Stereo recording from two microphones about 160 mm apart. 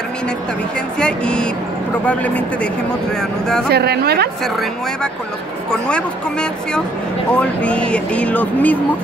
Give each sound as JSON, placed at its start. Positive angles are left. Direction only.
{"t": 0.9, "sound": "speech", "side_deg": 5}
{"t": 3.7, "sound": "speech", "side_deg": -80}
{"t": 7.3, "sound": "speech", "side_deg": 10}